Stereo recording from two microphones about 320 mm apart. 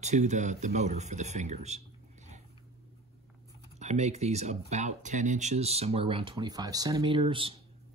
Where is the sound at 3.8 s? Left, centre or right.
Right.